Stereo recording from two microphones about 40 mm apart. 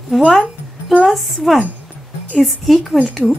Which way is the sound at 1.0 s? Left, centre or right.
Centre.